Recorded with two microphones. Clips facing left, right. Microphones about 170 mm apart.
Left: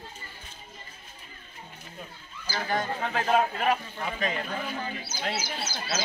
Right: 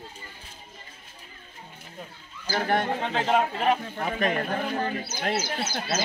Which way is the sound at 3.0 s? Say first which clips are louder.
Right 1 dB; 25° right (ahead or behind).